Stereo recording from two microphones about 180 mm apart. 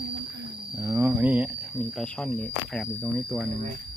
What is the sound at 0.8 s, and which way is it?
Speech, 15° right (ahead or behind).